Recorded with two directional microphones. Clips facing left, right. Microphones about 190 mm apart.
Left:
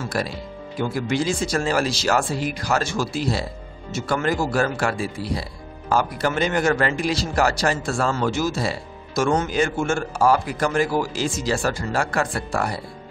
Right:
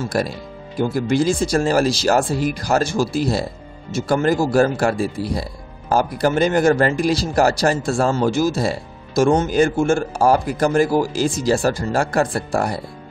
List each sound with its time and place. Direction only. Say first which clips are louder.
0.1 s speech: right 4 dB; 45° right (ahead or behind)